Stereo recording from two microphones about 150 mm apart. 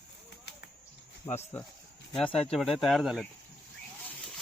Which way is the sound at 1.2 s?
25° left (ahead or behind).